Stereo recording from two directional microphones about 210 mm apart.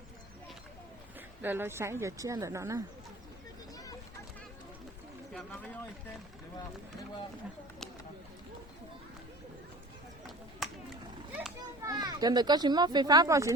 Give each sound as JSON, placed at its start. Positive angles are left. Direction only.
{"t": 1.4, "sound": "speech", "side_deg": -10}
{"t": 5.3, "sound": "speech", "side_deg": 0}
{"t": 10.6, "sound": "a sound", "side_deg": 0}
{"t": 11.9, "sound": "a child's voice", "side_deg": -15}